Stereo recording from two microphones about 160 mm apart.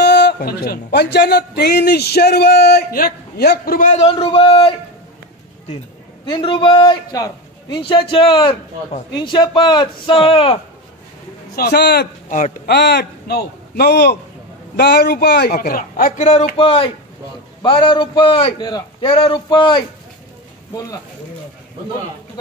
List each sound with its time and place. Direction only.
0.0 s a man's voice: 90° left; by 3.9 s 65° left (ahead or behind)
3.9 s a man's voice: 40° left (ahead or behind)
6.2 s a man's voice: 30° left (ahead or behind)
11.5 s a man's voice: 85° left
12.3 s a man's voice: 55° left (ahead or behind)
12.6 s a man's voice: 90° left; by 16.5 s 50° left (ahead or behind)
16.5 s a man's voice: 35° left (ahead or behind)